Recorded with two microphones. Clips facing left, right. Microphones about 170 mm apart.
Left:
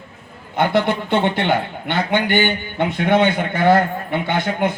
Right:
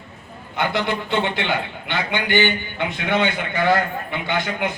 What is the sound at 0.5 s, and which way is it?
A man's voice, 55° left (ahead or behind).